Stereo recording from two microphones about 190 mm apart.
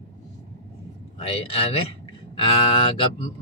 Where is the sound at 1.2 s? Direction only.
30° left (ahead or behind).